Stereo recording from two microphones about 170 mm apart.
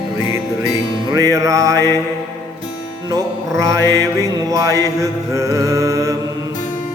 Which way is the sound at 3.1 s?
20° right (ahead or behind).